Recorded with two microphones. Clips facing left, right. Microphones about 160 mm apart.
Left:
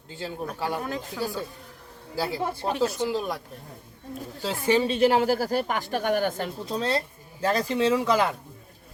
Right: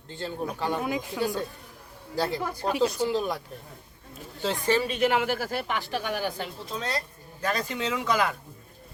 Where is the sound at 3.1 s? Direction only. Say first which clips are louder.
Right 1 dB; centre (ahead or behind).